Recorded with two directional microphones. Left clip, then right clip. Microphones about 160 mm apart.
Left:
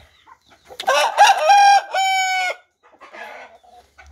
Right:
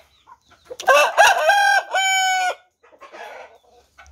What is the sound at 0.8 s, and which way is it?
Chicken, 50° right (ahead or behind).